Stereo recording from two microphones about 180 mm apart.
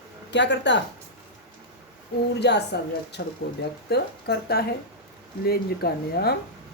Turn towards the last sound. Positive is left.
turn(degrees=60)  # may be behind; listen again after turning